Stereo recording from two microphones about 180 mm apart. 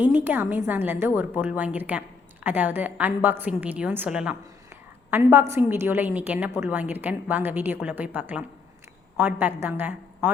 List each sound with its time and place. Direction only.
0.0 s a woman's voice: 10° right (ahead or behind)